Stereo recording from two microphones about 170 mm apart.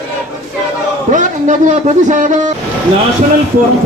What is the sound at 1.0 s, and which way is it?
A man's voice, 45° right (ahead or behind).